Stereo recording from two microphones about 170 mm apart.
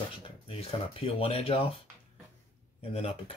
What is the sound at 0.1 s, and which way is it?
Speech, 30° left (ahead or behind).